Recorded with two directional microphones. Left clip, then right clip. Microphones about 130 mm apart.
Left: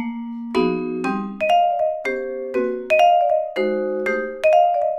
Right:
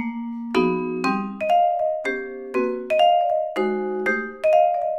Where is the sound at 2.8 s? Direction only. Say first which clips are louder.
Left 3 dB; 50° left (ahead or behind).